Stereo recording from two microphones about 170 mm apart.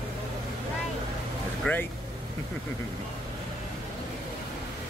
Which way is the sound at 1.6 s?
5° left (ahead or behind).